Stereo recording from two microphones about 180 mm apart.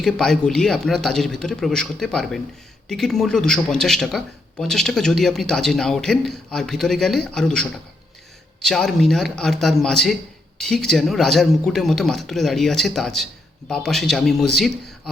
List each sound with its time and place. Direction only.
0.0 s speech: 5° left (ahead or behind)